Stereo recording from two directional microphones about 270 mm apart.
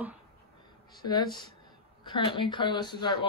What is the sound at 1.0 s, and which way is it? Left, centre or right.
Speech, centre.